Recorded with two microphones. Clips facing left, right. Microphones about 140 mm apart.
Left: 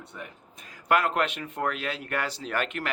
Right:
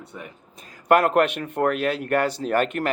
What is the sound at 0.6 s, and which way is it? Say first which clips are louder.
A man's voice: right 7 dB; 45° right (ahead or behind).